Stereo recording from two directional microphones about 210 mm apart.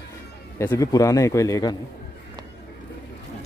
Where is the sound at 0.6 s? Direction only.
15° left (ahead or behind).